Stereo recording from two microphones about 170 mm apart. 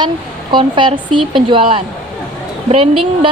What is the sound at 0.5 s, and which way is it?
A woman's voice, 30° right (ahead or behind).